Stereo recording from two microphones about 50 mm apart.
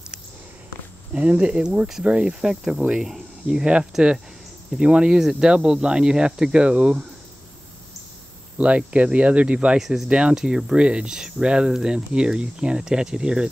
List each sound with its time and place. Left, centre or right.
1.1 s speech: right
8.5 s speech: right
9.8 s speech: centre
10.0 s speech: right